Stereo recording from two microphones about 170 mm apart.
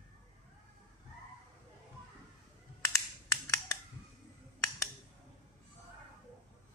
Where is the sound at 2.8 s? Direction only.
15° left (ahead or behind).